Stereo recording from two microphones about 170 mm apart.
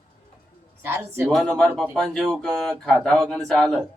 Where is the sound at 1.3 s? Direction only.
5° left (ahead or behind).